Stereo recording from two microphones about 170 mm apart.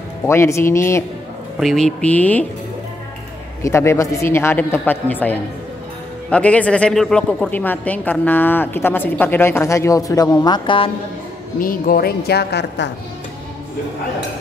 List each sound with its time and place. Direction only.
0.3 s a woman's voice: 15° left (ahead or behind)
1.6 s a woman's voice: centre (ahead or behind)
3.6 s a woman's voice: 15° left (ahead or behind)
11.6 s a woman's voice: 55° left (ahead or behind); by 12.9 s 85° left